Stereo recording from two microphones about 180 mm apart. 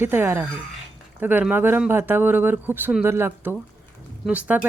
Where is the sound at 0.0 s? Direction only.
10° right (ahead or behind).